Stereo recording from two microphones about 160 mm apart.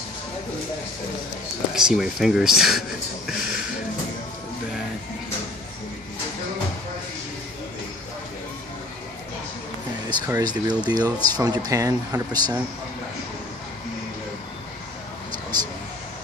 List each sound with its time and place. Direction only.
1.9 s speech: 5° right (ahead or behind)
3.3 s a sound: 5° right (ahead or behind)
10.0 s speech: 25° right (ahead or behind)